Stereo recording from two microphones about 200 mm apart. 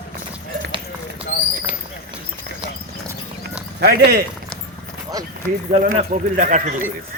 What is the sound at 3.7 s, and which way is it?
Speech, 55° right (ahead or behind).